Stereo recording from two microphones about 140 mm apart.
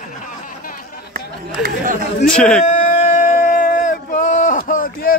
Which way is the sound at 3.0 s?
70° left (ahead or behind).